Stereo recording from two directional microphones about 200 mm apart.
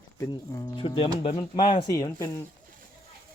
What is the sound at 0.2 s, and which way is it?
Speech, 20° left (ahead or behind).